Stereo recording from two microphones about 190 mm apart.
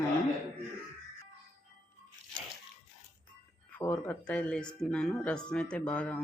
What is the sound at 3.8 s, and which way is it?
Speech, 10° left (ahead or behind).